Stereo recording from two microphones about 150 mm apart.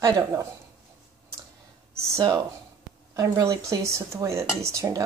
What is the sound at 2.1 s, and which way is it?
A woman's voice, 20° right (ahead or behind).